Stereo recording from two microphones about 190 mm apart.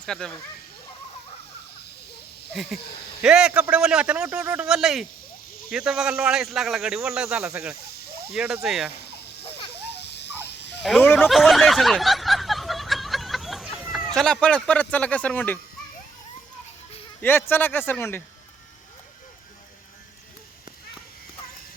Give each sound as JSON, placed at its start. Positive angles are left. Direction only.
{"t": 0.0, "sound": "speech", "side_deg": 5}
{"t": 2.6, "sound": "speech", "side_deg": 0}
{"t": 10.5, "sound": "fowl", "side_deg": 65}
{"t": 10.8, "sound": "speech", "side_deg": 0}
{"t": 11.3, "sound": "a sound", "side_deg": 0}
{"t": 17.2, "sound": "speech", "side_deg": 10}